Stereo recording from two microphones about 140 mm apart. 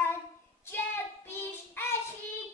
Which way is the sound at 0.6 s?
15° left (ahead or behind).